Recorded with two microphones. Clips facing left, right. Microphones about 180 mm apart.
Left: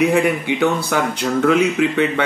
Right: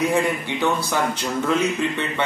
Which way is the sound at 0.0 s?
65° left (ahead or behind).